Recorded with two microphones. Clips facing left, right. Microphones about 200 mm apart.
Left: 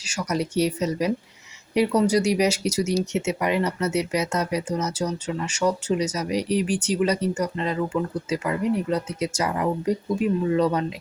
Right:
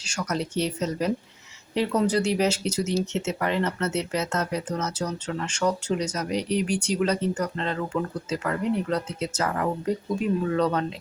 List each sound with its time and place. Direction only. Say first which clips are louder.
0.0 s speech: left 3 dB; 5° left (ahead or behind)